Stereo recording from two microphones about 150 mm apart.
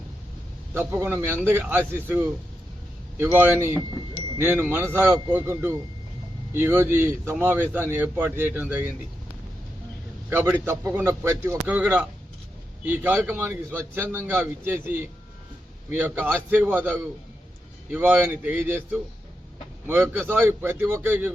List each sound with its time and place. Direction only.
0.7 s speech: 15° right (ahead or behind)
10.2 s speech: 15° right (ahead or behind)
19.9 s speech: 15° right (ahead or behind)